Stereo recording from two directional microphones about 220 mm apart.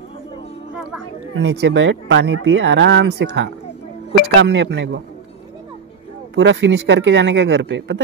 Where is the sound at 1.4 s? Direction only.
55° right (ahead or behind).